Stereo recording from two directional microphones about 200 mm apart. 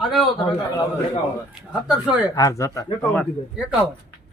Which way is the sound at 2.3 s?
15° left (ahead or behind).